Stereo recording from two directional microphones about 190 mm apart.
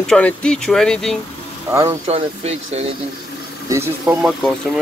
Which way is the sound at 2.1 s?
35° right (ahead or behind).